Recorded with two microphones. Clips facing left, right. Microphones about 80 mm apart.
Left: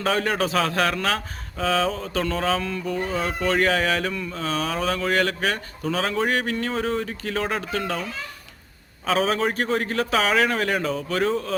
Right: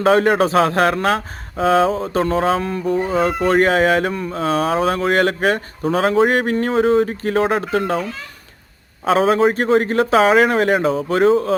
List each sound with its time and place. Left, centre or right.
0.0 s speech: right
9.0 s speech: right